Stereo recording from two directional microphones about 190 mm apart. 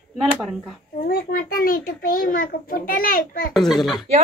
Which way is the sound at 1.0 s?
50° left (ahead or behind).